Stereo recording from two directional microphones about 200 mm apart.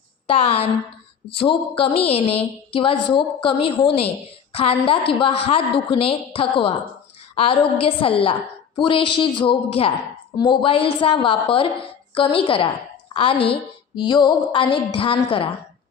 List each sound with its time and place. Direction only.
0.3 s a woman's voice: 30° left (ahead or behind)